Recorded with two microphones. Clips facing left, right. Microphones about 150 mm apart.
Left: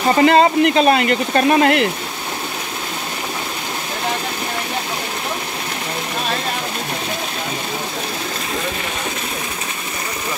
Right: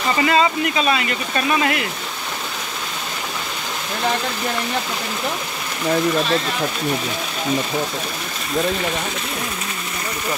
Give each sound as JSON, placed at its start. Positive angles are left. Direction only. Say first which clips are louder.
{"t": 0.0, "sound": "speech", "louder": "left 5 dB", "side_deg": 45}